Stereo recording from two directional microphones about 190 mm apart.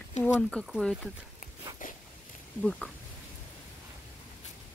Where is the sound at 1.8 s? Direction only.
45° left (ahead or behind).